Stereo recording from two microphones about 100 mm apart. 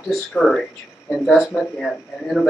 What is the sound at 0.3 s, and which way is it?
Speech, 10° left (ahead or behind).